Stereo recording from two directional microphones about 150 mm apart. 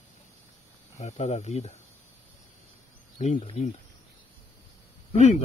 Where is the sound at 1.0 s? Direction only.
45° left (ahead or behind).